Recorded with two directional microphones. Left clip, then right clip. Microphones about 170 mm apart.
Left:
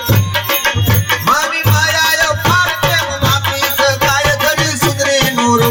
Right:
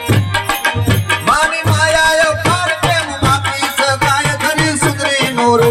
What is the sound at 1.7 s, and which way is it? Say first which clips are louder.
Music: right 2 dB; 30° right (ahead or behind).